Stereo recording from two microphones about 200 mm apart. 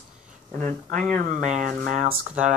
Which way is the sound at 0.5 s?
40° right (ahead or behind).